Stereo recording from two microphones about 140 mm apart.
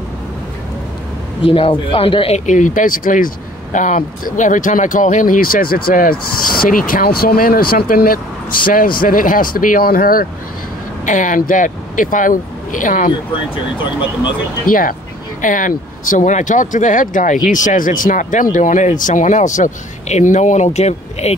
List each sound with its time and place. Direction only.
1.4 s speech: 40° left (ahead or behind); by 10.2 s 90° left
11.1 s speech: 65° left (ahead or behind)
14.7 s speech: 80° left
15.4 s speech: 70° left (ahead or behind); by 21.4 s 50° left (ahead or behind)